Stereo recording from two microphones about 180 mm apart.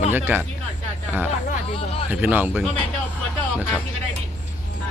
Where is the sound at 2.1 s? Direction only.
10° right (ahead or behind).